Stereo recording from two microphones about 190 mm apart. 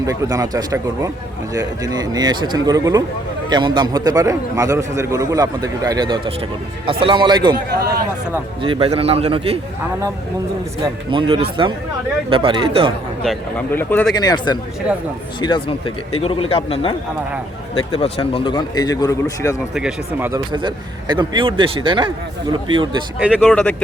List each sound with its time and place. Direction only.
0.0 s a man's voice: 20° right (ahead or behind)
7.8 s speech: 55° right (ahead or behind)
8.6 s a man's voice: 30° right (ahead or behind)
10.8 s speech: 25° right (ahead or behind)
13.2 s a man's voice: 10° left (ahead or behind)
14.1 s a man's voice: 20° left (ahead or behind)
19.7 s a man's voice: 5° right (ahead or behind)
20.5 s speech: 25° right (ahead or behind)
23.4 s a man's voice: 5° left (ahead or behind)